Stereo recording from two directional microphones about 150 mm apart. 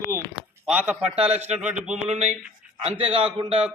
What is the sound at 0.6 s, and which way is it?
Speech, 10° right (ahead or behind).